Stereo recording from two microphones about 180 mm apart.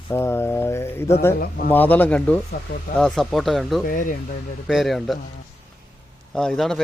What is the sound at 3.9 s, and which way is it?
Speech, 50° left (ahead or behind).